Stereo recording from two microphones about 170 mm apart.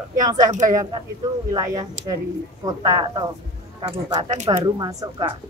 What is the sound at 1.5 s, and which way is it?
Speech, 20° right (ahead or behind).